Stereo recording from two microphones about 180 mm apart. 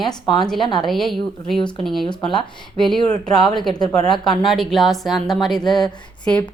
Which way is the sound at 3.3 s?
25° left (ahead or behind).